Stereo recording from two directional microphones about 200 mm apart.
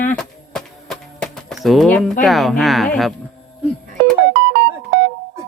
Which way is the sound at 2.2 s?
Centre (ahead or behind).